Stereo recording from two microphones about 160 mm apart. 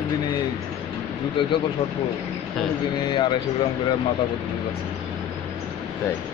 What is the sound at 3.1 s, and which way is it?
Speech, 30° left (ahead or behind).